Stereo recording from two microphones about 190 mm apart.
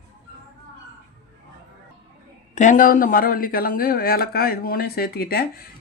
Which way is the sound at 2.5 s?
45° left (ahead or behind).